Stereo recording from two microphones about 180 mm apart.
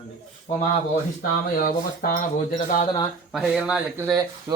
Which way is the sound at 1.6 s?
55° left (ahead or behind).